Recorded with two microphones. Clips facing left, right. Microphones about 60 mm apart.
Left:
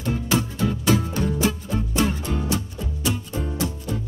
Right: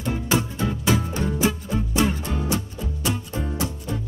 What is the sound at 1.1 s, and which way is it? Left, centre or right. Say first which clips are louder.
Music: even; right.